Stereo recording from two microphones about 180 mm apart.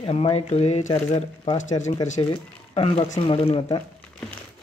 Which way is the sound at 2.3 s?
30° left (ahead or behind).